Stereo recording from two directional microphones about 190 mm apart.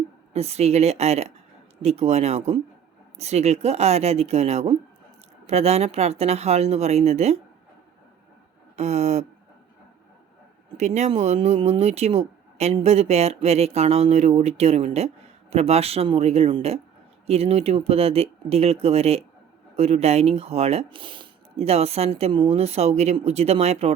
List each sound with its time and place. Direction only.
0.3 s speech: 35° right (ahead or behind)
8.7 s speech: 35° right (ahead or behind)
10.8 s speech: 35° right (ahead or behind)